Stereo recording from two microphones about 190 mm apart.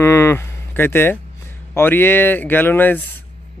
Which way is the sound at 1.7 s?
10° left (ahead or behind).